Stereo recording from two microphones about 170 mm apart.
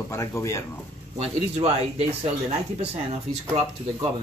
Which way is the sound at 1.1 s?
40° right (ahead or behind).